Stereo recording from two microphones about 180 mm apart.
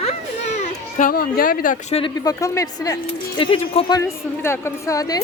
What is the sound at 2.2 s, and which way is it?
Speech, 20° left (ahead or behind).